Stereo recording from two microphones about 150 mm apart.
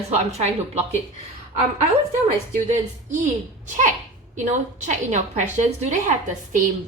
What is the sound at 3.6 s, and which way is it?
A child's voice, 55° right (ahead or behind).